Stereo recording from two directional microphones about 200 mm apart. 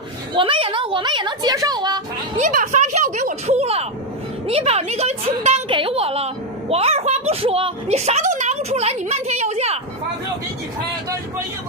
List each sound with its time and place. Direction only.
0.3 s a woman's voice: 25° right (ahead or behind)
2.3 s a woman's voice: 40° right (ahead or behind)